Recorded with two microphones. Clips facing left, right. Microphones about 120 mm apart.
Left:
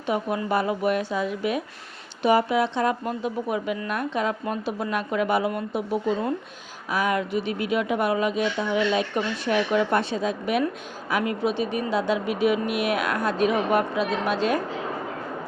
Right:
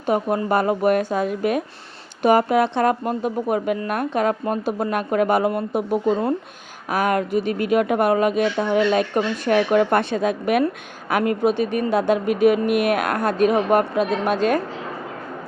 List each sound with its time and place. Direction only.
0.0 s speech: 45° right (ahead or behind)